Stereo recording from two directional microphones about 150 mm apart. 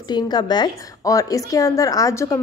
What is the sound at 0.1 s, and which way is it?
Speech, 30° left (ahead or behind).